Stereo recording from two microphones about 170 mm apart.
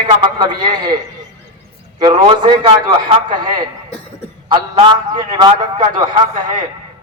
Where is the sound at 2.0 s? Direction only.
30° right (ahead or behind).